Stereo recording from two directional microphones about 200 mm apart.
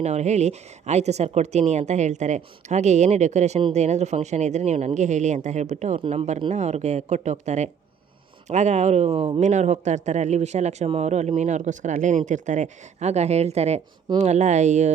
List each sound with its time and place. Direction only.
0.0 s speech: 35° right (ahead or behind)